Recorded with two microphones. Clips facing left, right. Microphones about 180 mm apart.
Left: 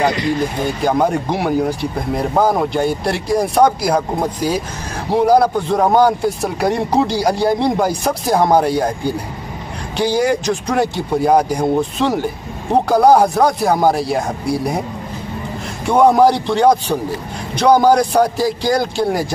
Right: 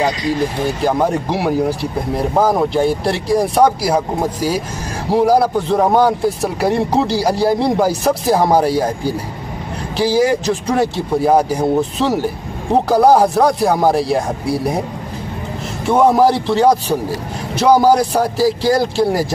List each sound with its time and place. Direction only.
0.7 s speech: centre (ahead or behind)
15.8 s speech: centre (ahead or behind)